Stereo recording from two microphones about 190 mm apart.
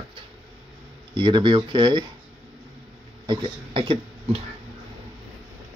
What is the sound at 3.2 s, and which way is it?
Speech, 25° right (ahead or behind).